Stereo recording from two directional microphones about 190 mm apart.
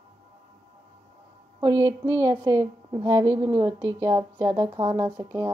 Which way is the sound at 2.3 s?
20° right (ahead or behind).